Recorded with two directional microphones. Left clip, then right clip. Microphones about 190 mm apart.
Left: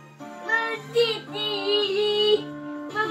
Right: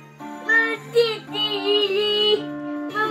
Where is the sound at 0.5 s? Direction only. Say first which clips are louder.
Right 6 dB; 40° right (ahead or behind).